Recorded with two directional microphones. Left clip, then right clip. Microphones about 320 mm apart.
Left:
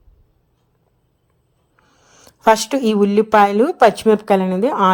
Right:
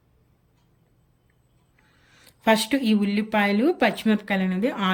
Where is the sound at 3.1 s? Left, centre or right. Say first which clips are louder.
Left 14 dB; left.